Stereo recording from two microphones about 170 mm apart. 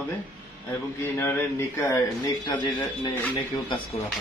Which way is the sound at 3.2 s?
10° left (ahead or behind).